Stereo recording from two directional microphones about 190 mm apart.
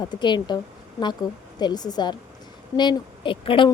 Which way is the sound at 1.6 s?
20° left (ahead or behind).